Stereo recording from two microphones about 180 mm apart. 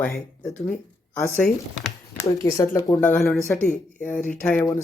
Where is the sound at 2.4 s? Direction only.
20° left (ahead or behind).